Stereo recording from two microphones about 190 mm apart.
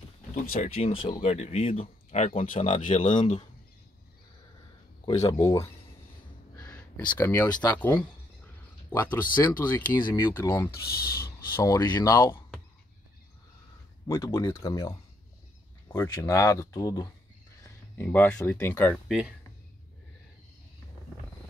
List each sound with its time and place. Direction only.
0.5 s speech: 35° left (ahead or behind)
2.8 s speech: 40° left (ahead or behind)
5.2 s speech: 20° left (ahead or behind)
6.5 s a sound: 20° left (ahead or behind)
7.2 s speech: 10° left (ahead or behind)
8.9 s speech: 10° left (ahead or behind)
10.8 s speech: 55° left (ahead or behind)
11.2 s speech: 20° left (ahead or behind)
14.0 s speech: 15° left (ahead or behind)
19.0 s speech: 5° right (ahead or behind)